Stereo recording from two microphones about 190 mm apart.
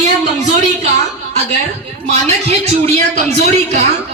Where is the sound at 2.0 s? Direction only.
35° right (ahead or behind).